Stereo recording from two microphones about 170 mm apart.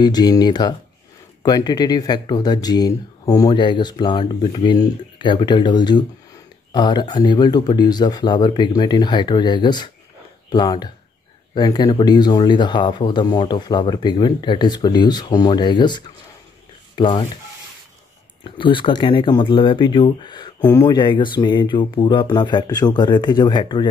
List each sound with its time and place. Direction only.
0.0 s speech: 25° left (ahead or behind)
18.4 s speech: 30° left (ahead or behind)